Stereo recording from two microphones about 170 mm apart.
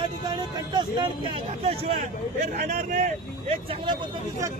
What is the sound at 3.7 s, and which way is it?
Speech, 25° right (ahead or behind).